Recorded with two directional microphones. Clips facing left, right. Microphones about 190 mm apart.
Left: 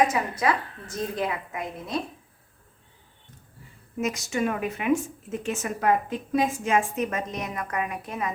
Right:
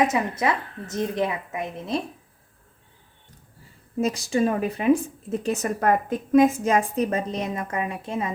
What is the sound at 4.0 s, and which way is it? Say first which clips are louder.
Speech: right 4 dB; 35° right (ahead or behind).